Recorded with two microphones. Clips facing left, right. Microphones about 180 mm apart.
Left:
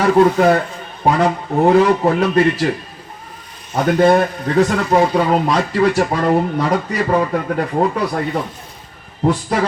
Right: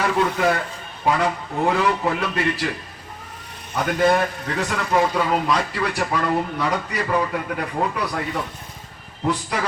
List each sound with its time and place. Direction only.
0.0 s a man's voice: 40° left (ahead or behind)
4.1 s speech: 40° left (ahead or behind)